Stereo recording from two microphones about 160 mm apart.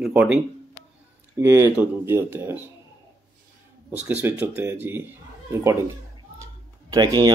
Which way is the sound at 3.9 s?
10° right (ahead or behind).